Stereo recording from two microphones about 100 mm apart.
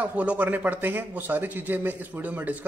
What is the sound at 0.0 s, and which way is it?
Speech, 15° right (ahead or behind).